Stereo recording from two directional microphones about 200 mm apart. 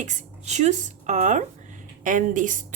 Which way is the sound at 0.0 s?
35° right (ahead or behind).